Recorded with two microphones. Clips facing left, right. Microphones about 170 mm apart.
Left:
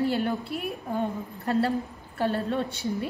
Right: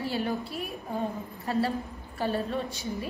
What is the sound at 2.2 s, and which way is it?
Speech, 65° left (ahead or behind).